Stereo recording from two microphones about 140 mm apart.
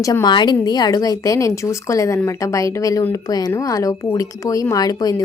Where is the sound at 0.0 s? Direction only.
25° left (ahead or behind).